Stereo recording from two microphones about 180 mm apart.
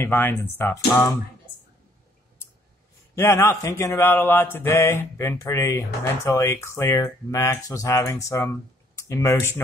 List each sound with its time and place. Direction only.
0.0 s a man's voice: 10° left (ahead or behind)
3.2 s a man's voice: 15° left (ahead or behind)